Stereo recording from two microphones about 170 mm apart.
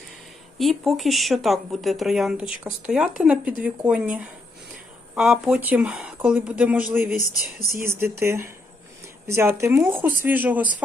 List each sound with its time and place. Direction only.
0.6 s speech: centre (ahead or behind)